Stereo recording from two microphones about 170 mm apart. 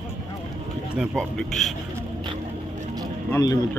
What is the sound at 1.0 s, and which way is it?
Speech, 5° left (ahead or behind).